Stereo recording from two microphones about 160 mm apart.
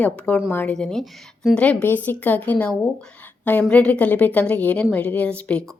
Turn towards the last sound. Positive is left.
turn(degrees=5)  # may be behind; listen again after turning